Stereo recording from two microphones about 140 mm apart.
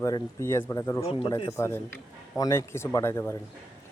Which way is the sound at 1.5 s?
20° left (ahead or behind).